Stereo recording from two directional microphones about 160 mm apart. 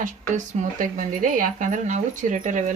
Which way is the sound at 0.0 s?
50° right (ahead or behind).